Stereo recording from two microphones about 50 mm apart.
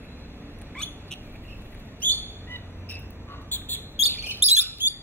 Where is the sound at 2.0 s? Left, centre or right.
Left.